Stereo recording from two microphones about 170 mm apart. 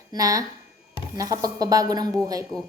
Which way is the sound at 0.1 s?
20° right (ahead or behind).